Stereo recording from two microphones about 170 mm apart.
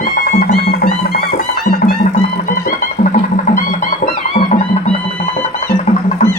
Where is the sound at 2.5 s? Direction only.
50° left (ahead or behind).